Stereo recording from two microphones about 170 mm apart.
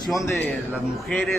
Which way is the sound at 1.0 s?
Centre (ahead or behind).